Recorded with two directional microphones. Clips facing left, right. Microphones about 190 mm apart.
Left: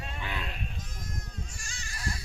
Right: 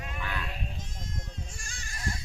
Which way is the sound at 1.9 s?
20° right (ahead or behind).